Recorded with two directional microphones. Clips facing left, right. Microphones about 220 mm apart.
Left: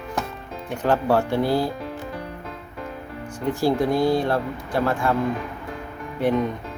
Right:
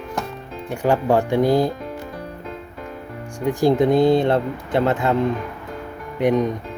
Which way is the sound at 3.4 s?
15° right (ahead or behind).